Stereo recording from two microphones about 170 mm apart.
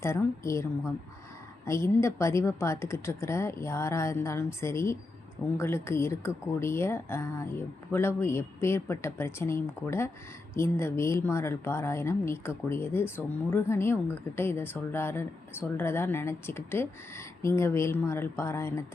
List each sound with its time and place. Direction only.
0.0 s speech: 15° left (ahead or behind)